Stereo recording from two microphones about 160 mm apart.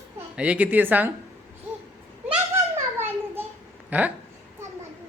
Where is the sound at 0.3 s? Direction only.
10° right (ahead or behind).